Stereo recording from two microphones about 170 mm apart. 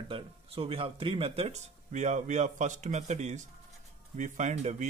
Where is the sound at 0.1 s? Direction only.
35° right (ahead or behind).